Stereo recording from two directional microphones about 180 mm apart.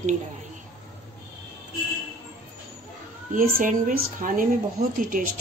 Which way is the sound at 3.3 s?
50° right (ahead or behind).